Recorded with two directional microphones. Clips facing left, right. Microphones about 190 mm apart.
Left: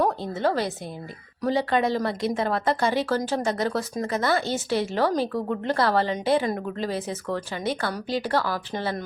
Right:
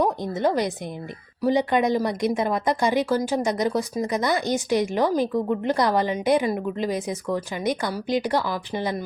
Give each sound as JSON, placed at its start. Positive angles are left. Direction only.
{"t": 0.0, "sound": "a woman's voice", "side_deg": -15}